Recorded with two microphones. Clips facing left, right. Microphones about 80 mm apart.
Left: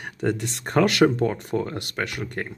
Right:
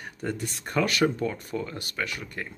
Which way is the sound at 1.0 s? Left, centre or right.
Left.